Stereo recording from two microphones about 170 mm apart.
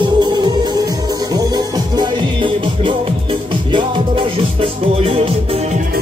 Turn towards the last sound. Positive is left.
turn(degrees=-35)  # may be behind; listen again after turning